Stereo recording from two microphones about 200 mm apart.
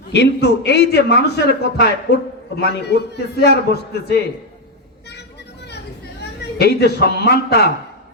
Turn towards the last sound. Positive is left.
turn(degrees=55)  # may be behind; listen again after turning